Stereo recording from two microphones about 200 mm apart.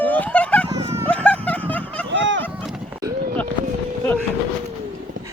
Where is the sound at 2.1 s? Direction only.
65° right (ahead or behind).